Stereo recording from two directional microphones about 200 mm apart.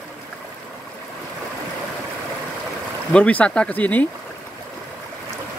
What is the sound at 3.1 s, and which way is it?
Speech, 5° left (ahead or behind).